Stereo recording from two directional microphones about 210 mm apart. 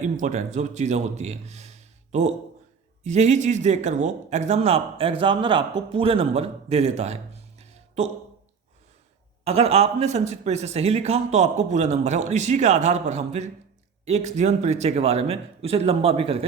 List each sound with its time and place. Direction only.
0.0 s a man's voice: 35° right (ahead or behind)
3.0 s a man's voice: 35° right (ahead or behind)
9.4 s a man's voice: 30° right (ahead or behind)